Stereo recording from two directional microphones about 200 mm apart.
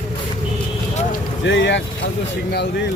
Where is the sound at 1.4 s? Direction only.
65° left (ahead or behind).